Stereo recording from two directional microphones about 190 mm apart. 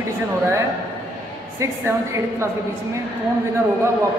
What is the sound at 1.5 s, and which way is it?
Speech, 15° right (ahead or behind).